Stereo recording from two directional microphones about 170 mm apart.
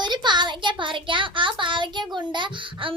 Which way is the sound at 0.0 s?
25° right (ahead or behind).